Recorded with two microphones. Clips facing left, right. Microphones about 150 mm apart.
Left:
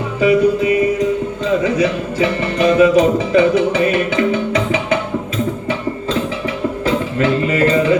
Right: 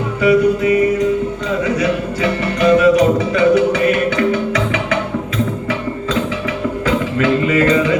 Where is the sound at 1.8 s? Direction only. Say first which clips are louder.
Left 1 dB; 30° left (ahead or behind).